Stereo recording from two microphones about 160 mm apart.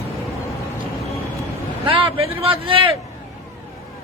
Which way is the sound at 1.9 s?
35° right (ahead or behind).